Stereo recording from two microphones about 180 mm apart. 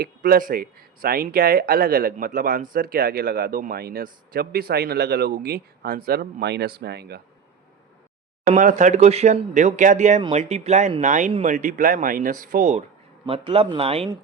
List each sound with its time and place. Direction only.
0.0 s a man's voice: 55° right (ahead or behind)
8.4 s speech: 45° right (ahead or behind)
13.2 s speech: 30° right (ahead or behind)